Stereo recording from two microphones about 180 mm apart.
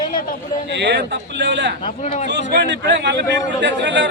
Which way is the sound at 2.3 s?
75° right (ahead or behind).